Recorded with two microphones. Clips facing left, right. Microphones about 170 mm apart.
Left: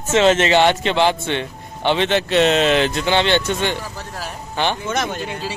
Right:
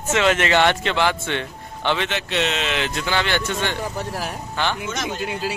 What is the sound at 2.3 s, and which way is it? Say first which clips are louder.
Speech: left 9 dB; 40° left (ahead or behind).